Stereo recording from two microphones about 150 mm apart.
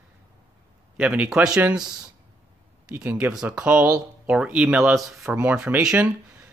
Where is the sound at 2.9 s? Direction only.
15° right (ahead or behind).